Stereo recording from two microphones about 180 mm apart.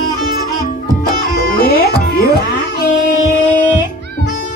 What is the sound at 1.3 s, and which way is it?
Music, 55° left (ahead or behind).